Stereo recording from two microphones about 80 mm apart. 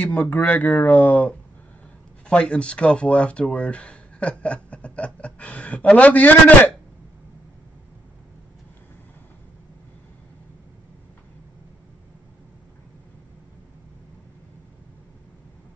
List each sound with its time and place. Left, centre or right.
0.0 s speech: left